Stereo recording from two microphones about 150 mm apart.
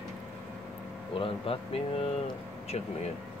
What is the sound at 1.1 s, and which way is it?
Speech, 35° left (ahead or behind).